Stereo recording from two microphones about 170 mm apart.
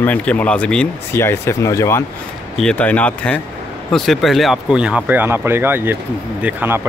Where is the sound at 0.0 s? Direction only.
10° left (ahead or behind).